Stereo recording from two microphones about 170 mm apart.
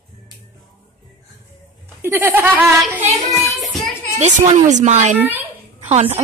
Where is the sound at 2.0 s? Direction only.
15° right (ahead or behind).